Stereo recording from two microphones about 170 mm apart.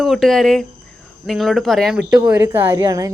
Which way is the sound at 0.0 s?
Centre (ahead or behind).